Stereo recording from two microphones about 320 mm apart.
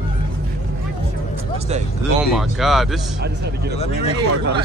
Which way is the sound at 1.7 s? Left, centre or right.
Centre.